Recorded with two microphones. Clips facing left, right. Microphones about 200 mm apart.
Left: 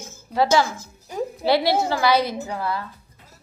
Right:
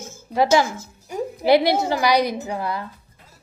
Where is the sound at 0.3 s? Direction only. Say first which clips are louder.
Right 1 dB; 15° right (ahead or behind).